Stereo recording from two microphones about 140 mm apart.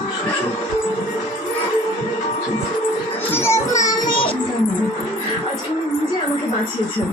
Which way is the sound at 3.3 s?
20° left (ahead or behind).